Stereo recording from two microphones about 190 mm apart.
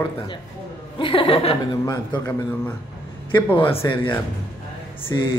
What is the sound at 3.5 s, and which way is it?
Speech, 25° left (ahead or behind).